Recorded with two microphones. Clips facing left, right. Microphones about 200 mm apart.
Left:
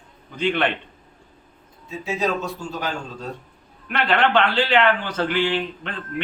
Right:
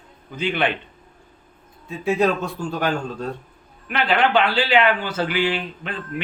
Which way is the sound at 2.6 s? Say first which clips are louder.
Right 5 dB; 60° right (ahead or behind).